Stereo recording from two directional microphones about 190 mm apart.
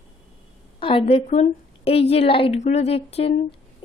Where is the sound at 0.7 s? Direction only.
30° left (ahead or behind).